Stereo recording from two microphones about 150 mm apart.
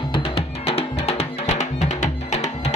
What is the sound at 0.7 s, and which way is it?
Music, 45° left (ahead or behind).